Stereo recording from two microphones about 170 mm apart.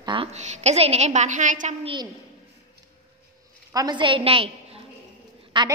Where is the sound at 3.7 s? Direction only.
25° right (ahead or behind).